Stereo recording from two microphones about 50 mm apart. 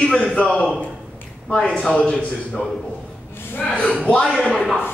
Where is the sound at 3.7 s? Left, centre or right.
Centre.